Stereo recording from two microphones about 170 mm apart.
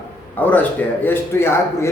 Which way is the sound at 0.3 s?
10° left (ahead or behind).